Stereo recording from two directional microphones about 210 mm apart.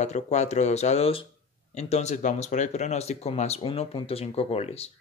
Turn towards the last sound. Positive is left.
turn(degrees=30)  # may be behind; listen again after turning